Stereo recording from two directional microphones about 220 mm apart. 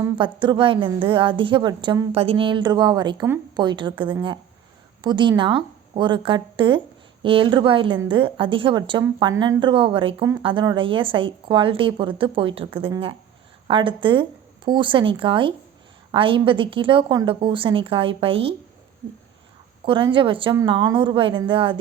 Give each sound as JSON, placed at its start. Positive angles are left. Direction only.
{"t": 0.0, "sound": "a woman's voice", "side_deg": -20}
{"t": 19.8, "sound": "a woman's voice", "side_deg": -20}